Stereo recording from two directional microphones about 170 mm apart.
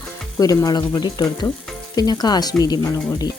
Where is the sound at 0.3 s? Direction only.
20° left (ahead or behind).